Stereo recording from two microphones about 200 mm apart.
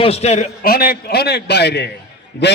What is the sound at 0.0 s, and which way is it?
A man's voice, 30° left (ahead or behind).